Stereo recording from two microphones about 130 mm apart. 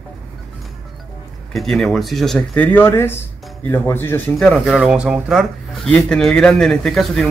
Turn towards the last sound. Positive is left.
turn(degrees=0)  # may be behind; listen again after turning